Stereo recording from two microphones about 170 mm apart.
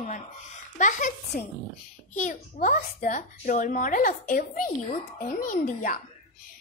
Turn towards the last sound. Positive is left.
turn(degrees=50)  # may be behind; listen again after turning